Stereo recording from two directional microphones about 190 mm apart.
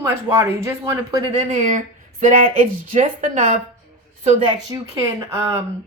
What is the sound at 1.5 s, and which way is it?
Speech, 40° right (ahead or behind).